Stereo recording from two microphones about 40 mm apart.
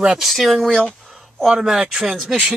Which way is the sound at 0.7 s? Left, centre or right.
Left.